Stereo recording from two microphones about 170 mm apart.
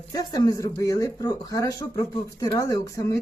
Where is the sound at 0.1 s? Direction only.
20° left (ahead or behind).